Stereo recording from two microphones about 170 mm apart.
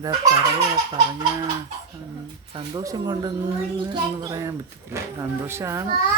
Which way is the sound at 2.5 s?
25° right (ahead or behind).